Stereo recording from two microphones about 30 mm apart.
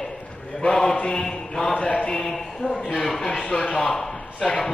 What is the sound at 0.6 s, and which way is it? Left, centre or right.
Mantra, left.